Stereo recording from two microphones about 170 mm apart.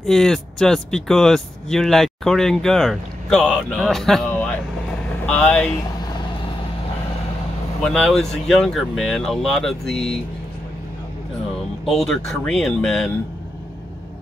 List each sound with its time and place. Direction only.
0.0 s speech: 5° left (ahead or behind)
7.8 s speech: 5° left (ahead or behind)
11.8 s speech: centre (ahead or behind)